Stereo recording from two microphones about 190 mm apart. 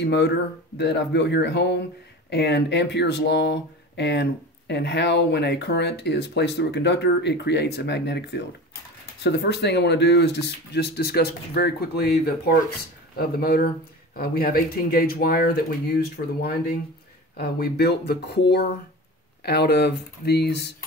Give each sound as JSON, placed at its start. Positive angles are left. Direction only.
{"t": 0.0, "sound": "speech", "side_deg": 65}
{"t": 13.4, "sound": "speech", "side_deg": 55}